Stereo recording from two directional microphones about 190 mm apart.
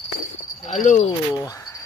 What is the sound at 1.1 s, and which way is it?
Speech, 20° left (ahead or behind).